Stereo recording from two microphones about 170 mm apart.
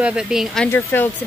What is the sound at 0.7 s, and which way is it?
Speech, 15° left (ahead or behind).